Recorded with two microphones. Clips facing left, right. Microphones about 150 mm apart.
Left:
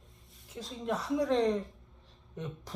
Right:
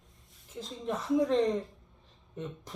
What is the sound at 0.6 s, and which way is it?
Speech, 20° right (ahead or behind).